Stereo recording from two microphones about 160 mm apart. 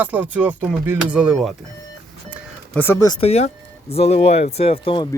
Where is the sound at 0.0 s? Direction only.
10° right (ahead or behind).